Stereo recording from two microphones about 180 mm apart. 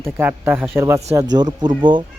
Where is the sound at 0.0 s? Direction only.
10° right (ahead or behind).